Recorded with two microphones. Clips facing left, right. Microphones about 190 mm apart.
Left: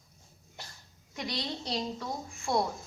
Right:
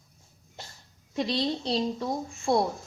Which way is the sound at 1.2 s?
25° right (ahead or behind).